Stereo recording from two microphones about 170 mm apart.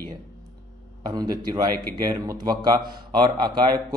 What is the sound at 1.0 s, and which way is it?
A man's voice, 25° right (ahead or behind).